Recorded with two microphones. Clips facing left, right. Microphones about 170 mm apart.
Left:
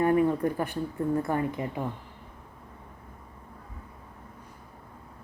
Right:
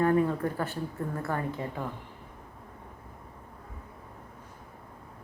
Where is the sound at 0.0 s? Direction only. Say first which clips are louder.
Left 2 dB; 15° left (ahead or behind).